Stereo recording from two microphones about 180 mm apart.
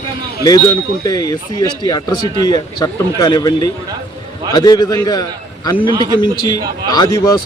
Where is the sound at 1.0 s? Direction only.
20° left (ahead or behind).